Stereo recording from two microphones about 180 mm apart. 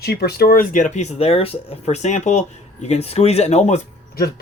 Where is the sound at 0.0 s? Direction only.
60° left (ahead or behind); by 3.8 s 35° left (ahead or behind).